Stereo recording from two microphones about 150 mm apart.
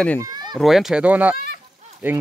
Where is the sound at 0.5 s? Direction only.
Centre (ahead or behind).